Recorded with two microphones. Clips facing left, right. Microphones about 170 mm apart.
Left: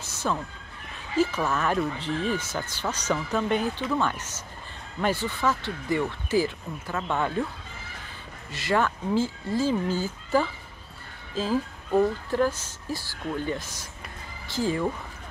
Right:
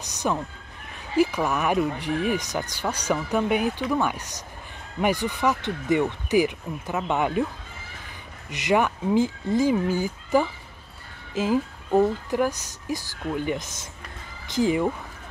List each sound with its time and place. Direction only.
0.0 s speech: 15° right (ahead or behind)
8.5 s speech: 20° right (ahead or behind)